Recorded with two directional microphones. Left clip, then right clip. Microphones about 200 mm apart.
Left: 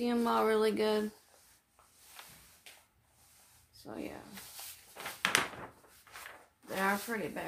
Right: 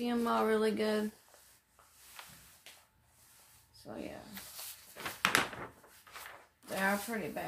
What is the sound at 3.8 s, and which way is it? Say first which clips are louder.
Speech: left 1 dB; 30° left (ahead or behind).